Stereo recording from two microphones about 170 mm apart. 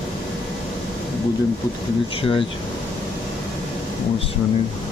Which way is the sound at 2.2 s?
30° left (ahead or behind).